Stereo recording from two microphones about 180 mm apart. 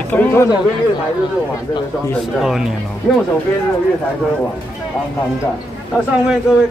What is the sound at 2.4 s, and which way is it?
Speech, centre (ahead or behind).